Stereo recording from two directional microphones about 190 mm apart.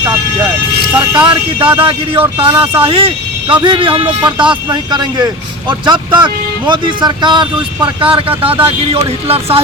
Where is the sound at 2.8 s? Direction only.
30° right (ahead or behind).